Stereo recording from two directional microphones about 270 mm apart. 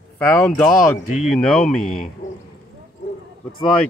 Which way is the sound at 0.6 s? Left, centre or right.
Centre.